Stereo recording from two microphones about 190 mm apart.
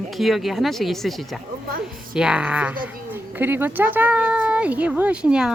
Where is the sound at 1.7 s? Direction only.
50° right (ahead or behind).